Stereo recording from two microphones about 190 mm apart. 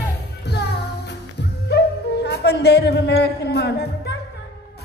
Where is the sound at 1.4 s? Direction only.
60° left (ahead or behind).